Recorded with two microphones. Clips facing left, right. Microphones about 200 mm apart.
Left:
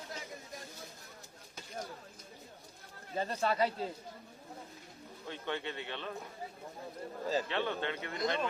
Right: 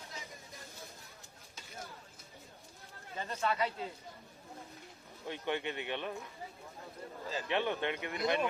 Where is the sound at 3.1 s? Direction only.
35° left (ahead or behind).